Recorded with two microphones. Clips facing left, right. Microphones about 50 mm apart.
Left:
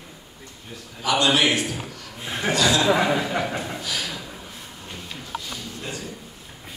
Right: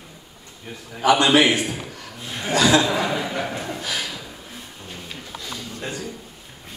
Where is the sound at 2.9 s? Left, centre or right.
Centre.